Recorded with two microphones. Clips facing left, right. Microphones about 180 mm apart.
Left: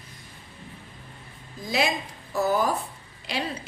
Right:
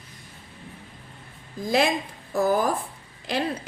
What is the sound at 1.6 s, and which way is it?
A woman's voice, 50° right (ahead or behind).